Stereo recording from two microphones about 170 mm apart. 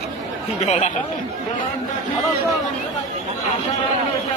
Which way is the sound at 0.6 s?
40° left (ahead or behind).